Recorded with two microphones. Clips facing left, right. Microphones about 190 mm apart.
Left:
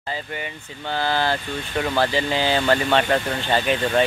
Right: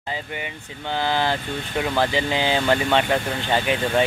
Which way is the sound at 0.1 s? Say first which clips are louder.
Even; 15° right (ahead or behind).